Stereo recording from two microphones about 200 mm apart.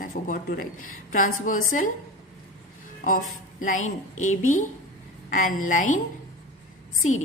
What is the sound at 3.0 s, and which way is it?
A woman's voice, 45° left (ahead or behind).